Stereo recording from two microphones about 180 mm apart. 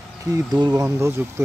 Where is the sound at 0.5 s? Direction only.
20° right (ahead or behind).